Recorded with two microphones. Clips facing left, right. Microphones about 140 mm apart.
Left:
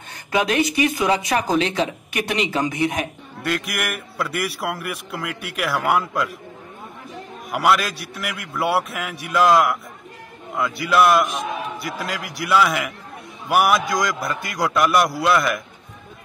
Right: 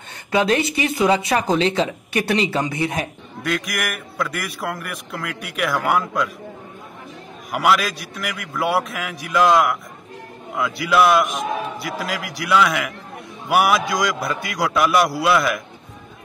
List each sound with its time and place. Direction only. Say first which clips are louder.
0.5 s speech: even; 30° right (ahead or behind)
3.4 s a man's voice: even; 5° left (ahead or behind)
7.5 s a man's voice: even; centre (ahead or behind)